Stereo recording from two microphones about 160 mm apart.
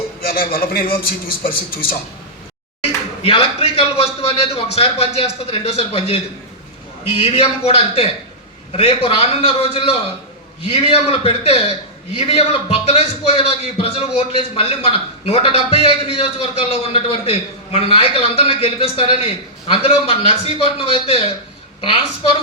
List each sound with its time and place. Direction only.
0.2 s a man's voice: 65° left (ahead or behind)
3.2 s a man's voice: 35° left (ahead or behind)